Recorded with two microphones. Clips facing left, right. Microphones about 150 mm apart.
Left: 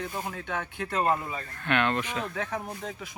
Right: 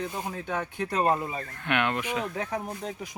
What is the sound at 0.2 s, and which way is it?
Speech, 10° right (ahead or behind).